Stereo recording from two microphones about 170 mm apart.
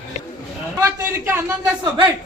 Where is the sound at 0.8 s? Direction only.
15° right (ahead or behind).